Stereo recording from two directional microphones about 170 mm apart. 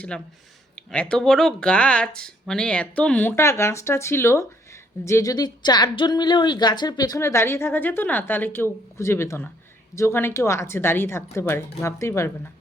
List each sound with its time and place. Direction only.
0.1 s speech: 5° left (ahead or behind)